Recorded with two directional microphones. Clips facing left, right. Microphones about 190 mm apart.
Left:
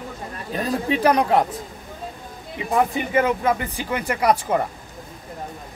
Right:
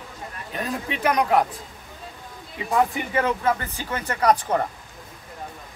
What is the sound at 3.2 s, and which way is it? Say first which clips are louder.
Speech: left 2 dB; 15° left (ahead or behind).